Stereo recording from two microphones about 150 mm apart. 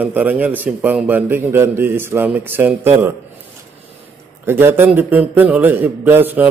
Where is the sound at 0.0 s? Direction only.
10° right (ahead or behind).